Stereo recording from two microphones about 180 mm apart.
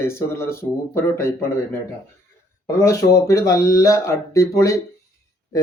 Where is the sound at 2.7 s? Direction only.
15° left (ahead or behind).